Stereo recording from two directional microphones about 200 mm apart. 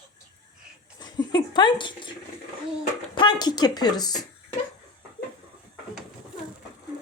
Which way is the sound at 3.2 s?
20° left (ahead or behind).